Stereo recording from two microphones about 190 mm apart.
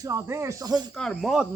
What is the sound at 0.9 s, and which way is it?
Speech, centre (ahead or behind).